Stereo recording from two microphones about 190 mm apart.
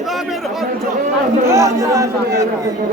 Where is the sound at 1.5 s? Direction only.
15° right (ahead or behind).